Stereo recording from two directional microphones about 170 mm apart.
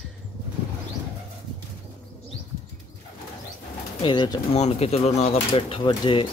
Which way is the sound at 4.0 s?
30° left (ahead or behind).